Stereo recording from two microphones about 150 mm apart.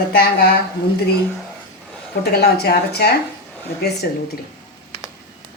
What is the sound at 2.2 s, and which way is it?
Speech, 90° left.